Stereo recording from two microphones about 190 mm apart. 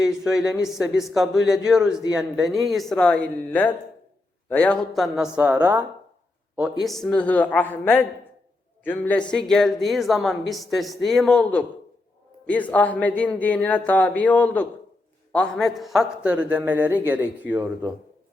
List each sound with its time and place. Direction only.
0.0 s a woman's voice: 5° right (ahead or behind)